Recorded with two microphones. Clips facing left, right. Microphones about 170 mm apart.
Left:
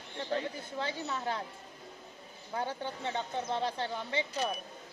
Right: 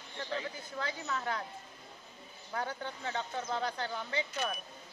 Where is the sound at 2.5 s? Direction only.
25° left (ahead or behind).